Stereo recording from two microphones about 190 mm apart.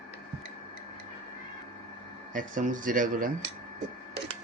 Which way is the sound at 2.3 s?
45° right (ahead or behind).